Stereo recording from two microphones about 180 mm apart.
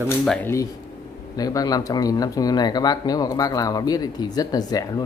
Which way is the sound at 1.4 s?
20° left (ahead or behind).